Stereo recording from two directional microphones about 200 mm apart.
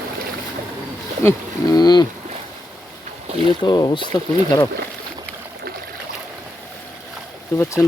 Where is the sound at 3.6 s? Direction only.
20° left (ahead or behind).